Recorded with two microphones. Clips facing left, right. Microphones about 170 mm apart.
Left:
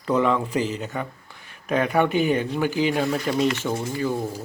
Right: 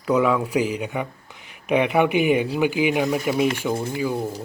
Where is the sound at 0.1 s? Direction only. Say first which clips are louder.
Right 2 dB; 5° right (ahead or behind).